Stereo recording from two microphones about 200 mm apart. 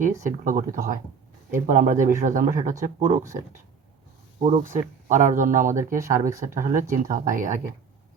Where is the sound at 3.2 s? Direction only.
15° right (ahead or behind).